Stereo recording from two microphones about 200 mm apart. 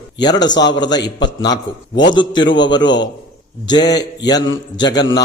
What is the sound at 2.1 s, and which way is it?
A man's voice, 20° left (ahead or behind).